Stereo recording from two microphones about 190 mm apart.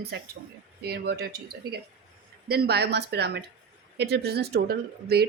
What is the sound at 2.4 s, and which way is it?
Speech, 55° right (ahead or behind).